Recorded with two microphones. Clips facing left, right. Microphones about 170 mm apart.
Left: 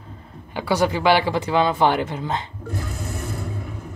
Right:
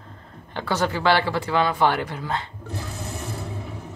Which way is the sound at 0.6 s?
10° left (ahead or behind).